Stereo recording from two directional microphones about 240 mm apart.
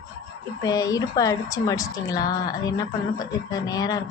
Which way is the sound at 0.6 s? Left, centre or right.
Centre.